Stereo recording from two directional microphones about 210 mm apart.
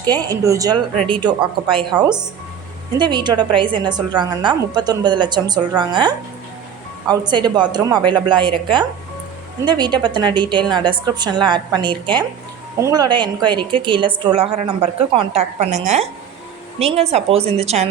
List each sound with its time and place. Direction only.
0.0 s a woman's voice: 20° right (ahead or behind)
3.0 s a woman's voice: 20° right (ahead or behind)